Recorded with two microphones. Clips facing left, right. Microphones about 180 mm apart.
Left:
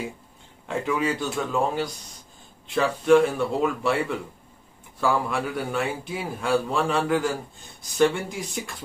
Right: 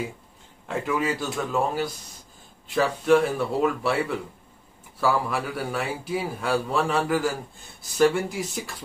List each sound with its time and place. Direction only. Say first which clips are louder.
0.7 s a man's voice: left 1 dB; centre (ahead or behind)
5.0 s a man's voice: even; 5° right (ahead or behind)